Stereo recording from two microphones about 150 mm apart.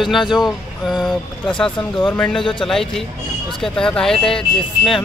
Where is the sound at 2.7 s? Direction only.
5° left (ahead or behind).